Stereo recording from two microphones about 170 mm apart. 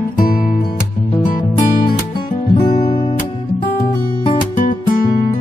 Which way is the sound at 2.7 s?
40° left (ahead or behind).